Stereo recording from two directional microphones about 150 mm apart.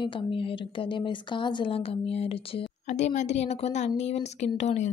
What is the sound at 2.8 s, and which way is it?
A woman's voice, 55° left (ahead or behind).